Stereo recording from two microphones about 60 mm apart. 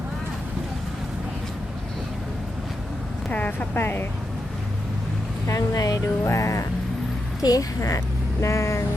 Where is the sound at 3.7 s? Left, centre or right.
Left.